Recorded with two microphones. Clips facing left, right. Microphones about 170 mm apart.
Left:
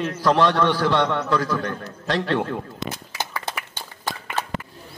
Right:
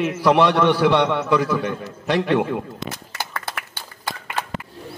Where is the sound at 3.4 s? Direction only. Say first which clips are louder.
Left 1 dB; 10° right (ahead or behind).